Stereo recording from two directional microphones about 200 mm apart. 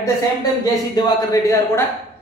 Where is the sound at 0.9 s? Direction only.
20° left (ahead or behind).